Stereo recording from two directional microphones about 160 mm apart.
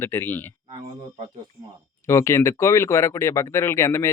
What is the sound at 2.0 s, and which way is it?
Speech, 15° left (ahead or behind).